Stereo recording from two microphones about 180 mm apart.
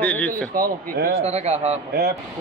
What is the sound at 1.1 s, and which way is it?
Speech, 35° right (ahead or behind).